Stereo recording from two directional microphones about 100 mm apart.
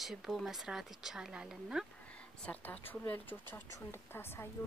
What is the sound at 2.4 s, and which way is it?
Speech, 15° left (ahead or behind).